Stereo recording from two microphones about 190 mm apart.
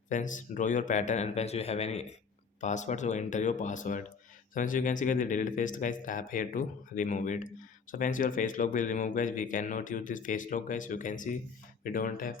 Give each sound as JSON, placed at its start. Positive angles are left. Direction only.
{"t": 0.1, "sound": "speech", "side_deg": 40}